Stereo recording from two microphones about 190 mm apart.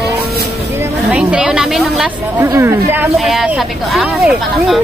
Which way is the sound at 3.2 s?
Centre (ahead or behind).